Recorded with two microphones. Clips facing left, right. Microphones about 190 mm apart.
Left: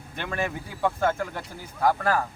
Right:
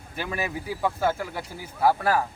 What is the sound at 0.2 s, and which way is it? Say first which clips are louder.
Speech: even; 5° right (ahead or behind).